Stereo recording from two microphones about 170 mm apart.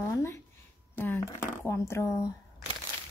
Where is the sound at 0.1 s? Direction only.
15° left (ahead or behind).